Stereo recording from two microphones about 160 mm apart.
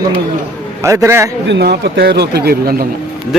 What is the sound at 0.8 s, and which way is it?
Speech, 20° right (ahead or behind).